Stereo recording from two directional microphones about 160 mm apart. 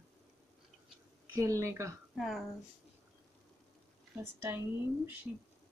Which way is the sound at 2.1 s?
Centre (ahead or behind).